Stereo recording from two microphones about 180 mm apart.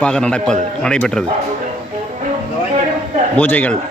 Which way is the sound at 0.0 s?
5° left (ahead or behind).